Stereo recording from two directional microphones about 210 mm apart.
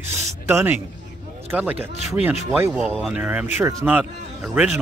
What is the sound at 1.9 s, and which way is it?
Speech, 30° left (ahead or behind).